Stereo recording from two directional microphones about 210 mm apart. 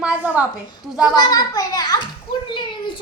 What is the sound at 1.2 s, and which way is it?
Speech, 20° left (ahead or behind).